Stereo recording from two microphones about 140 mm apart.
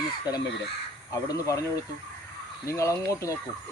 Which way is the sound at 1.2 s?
25° left (ahead or behind).